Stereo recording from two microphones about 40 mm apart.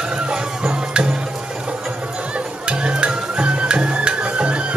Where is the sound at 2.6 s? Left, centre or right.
Right.